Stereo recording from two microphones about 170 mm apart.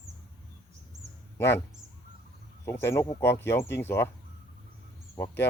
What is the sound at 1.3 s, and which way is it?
Speech, 15° left (ahead or behind).